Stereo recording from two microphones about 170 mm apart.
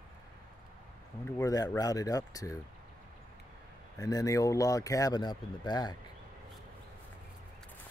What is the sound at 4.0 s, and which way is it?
Speech, 20° left (ahead or behind).